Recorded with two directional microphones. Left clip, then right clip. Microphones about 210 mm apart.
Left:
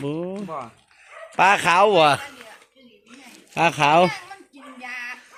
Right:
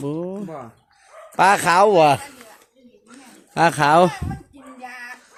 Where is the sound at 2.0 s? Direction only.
25° right (ahead or behind).